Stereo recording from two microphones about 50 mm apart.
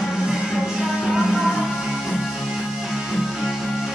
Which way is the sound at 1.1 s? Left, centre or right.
Centre.